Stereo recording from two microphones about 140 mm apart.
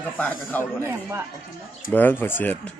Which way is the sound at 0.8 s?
15° right (ahead or behind).